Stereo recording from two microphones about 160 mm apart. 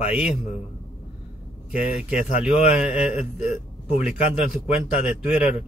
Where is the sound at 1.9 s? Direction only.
45° left (ahead or behind).